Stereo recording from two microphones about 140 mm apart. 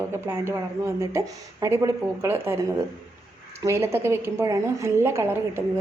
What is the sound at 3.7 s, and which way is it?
A woman's voice, 20° right (ahead or behind).